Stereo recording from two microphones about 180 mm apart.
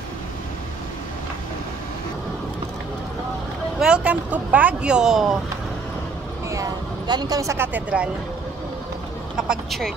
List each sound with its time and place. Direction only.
3.8 s speech: 5° right (ahead or behind)
6.5 s speech: 20° right (ahead or behind)
9.4 s speech: centre (ahead or behind)